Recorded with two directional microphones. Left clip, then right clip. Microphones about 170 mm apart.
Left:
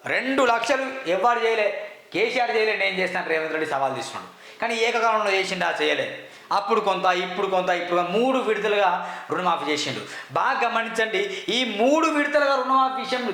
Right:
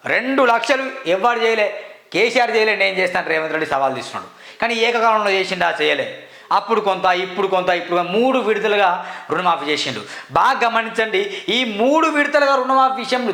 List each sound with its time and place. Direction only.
0.1 s a man's voice: 25° right (ahead or behind)
2.1 s a man's voice: 45° right (ahead or behind)